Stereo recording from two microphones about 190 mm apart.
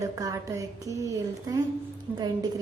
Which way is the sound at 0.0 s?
20° right (ahead or behind).